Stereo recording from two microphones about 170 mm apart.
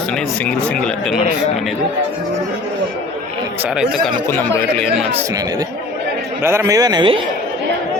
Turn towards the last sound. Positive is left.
turn(degrees=-25)  # may be behind; listen again after turning